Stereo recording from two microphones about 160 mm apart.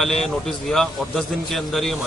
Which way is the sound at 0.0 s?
Centre (ahead or behind).